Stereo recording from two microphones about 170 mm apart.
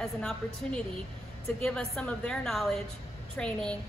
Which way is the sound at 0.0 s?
5° left (ahead or behind).